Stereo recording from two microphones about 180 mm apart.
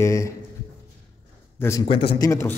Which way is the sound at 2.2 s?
15° left (ahead or behind).